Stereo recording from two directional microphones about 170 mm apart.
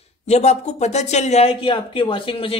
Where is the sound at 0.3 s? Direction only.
40° left (ahead or behind).